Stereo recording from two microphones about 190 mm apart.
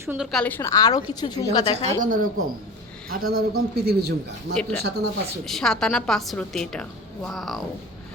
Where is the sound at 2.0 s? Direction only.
45° right (ahead or behind).